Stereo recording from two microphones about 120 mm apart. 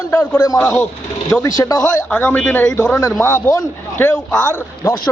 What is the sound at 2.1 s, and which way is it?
A man's voice, 10° left (ahead or behind).